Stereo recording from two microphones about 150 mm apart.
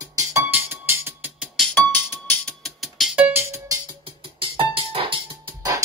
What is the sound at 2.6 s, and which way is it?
Music, centre (ahead or behind).